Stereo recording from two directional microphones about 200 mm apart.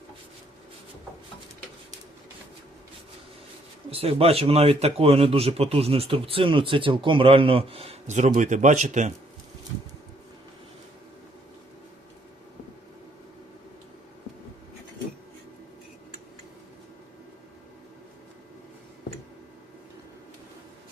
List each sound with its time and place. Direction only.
3.8 s a man's voice: 30° right (ahead or behind)